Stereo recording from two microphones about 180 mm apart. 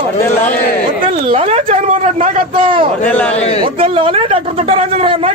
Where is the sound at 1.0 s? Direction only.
30° right (ahead or behind).